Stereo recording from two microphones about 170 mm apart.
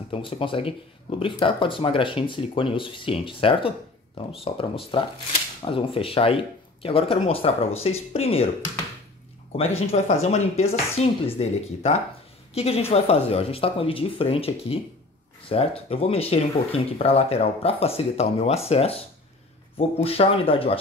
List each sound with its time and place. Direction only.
0.1 s speech: 30° left (ahead or behind)
9.6 s speech: 35° left (ahead or behind)
20.0 s speech: 35° left (ahead or behind)